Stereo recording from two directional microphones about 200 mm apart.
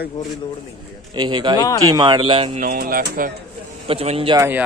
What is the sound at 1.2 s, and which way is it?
Speech, 20° right (ahead or behind).